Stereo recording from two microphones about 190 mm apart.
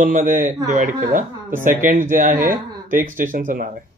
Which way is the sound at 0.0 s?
45° right (ahead or behind).